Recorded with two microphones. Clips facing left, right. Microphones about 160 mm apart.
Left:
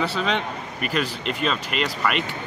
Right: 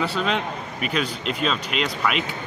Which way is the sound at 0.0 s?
Centre (ahead or behind).